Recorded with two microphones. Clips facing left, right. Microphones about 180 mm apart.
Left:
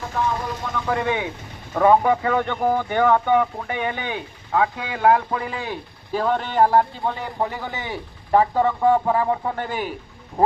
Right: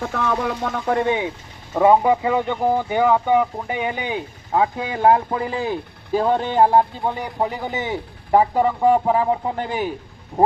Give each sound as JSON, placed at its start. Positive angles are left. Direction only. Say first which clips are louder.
{"t": 0.1, "sound": "speech", "louder": "left 2 dB", "side_deg": -70}
{"t": 0.9, "sound": "speech", "louder": "right 3 dB", "side_deg": -25}
{"t": 4.5, "sound": "speech", "louder": "right 2 dB", "side_deg": -25}
{"t": 6.5, "sound": "speech", "louder": "even", "side_deg": -20}